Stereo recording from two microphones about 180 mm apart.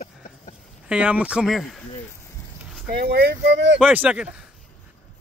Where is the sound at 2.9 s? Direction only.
60° right (ahead or behind); by 3.7 s 75° right (ahead or behind).